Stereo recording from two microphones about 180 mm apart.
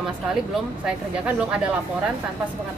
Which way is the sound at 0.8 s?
5° right (ahead or behind).